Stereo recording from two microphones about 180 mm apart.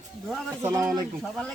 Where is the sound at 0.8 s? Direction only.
Centre (ahead or behind).